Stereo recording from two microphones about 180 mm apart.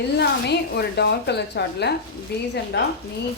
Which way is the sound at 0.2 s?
65° left (ahead or behind).